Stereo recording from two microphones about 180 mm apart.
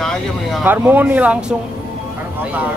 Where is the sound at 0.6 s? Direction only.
10° right (ahead or behind).